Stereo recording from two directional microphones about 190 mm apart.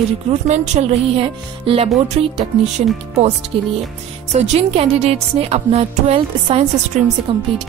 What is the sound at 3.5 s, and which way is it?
A woman's voice, 30° right (ahead or behind).